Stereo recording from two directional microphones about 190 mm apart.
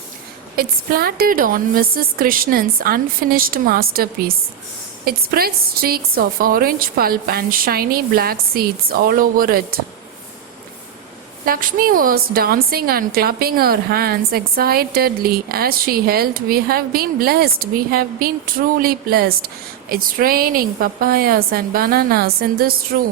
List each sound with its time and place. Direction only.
0.5 s a woman's voice: 50° right (ahead or behind)
11.4 s a woman's voice: 50° right (ahead or behind)